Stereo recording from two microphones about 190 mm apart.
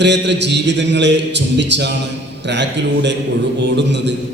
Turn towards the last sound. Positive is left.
turn(degrees=-65)  # may be behind; listen again after turning